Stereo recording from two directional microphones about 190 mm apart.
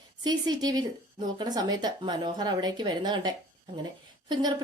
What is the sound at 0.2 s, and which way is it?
A woman's voice, 20° right (ahead or behind).